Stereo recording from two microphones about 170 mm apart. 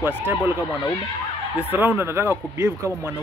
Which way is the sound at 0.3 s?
10° right (ahead or behind).